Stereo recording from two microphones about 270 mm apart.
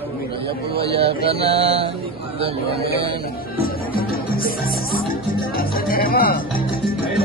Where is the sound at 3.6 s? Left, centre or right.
Left.